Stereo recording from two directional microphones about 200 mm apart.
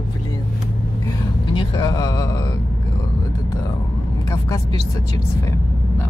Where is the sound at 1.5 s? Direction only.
25° left (ahead or behind).